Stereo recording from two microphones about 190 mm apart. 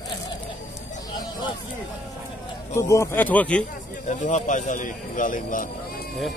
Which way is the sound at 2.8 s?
15° left (ahead or behind).